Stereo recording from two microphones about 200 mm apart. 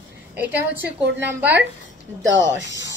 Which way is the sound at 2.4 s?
65° right (ahead or behind).